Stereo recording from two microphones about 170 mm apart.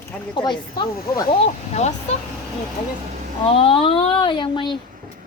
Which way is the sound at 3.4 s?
35° left (ahead or behind).